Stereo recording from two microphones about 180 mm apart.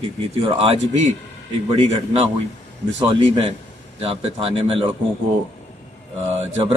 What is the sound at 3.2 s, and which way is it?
A man's voice, 35° right (ahead or behind).